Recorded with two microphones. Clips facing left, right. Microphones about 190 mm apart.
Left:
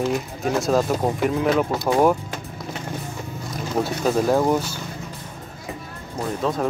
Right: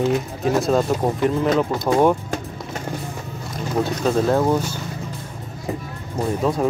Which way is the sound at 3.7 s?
10° left (ahead or behind).